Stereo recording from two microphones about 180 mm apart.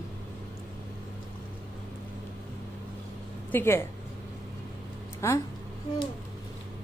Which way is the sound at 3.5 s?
10° left (ahead or behind).